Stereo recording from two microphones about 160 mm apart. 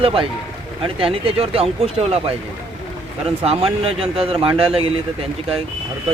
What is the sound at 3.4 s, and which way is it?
Speech, 40° right (ahead or behind).